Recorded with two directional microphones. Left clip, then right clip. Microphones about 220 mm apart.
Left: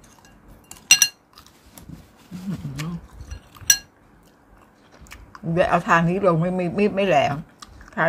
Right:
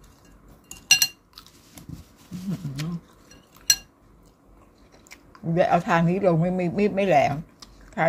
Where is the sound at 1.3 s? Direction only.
15° right (ahead or behind).